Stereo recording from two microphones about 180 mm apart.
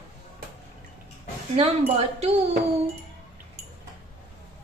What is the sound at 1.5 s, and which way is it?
Speech, 30° right (ahead or behind).